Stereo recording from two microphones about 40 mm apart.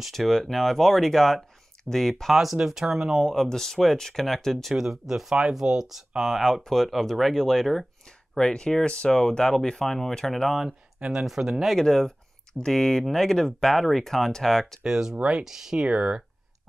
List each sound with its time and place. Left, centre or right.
0.0 s speech: centre
2.5 s speech: centre
3.2 s speech: centre
4.7 s speech: centre
8.4 s speech: left; by 10.6 s centre
11.1 s speech: centre
11.8 s speech: centre
14.9 s speech: centre
15.9 s speech: right